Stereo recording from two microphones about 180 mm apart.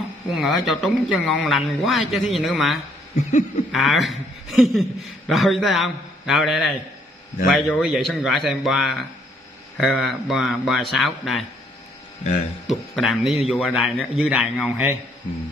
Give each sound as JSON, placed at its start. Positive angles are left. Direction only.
{"t": 0.3, "sound": "a man's voice", "side_deg": 0}
{"t": 3.2, "sound": "a sound", "side_deg": 45}
{"t": 3.7, "sound": "a man's voice", "side_deg": 0}
{"t": 12.6, "sound": "a man's voice", "side_deg": 0}